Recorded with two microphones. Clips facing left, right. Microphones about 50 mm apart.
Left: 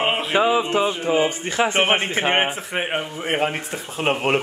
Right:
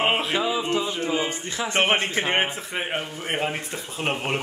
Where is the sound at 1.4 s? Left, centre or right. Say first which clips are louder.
Left 8 dB; left.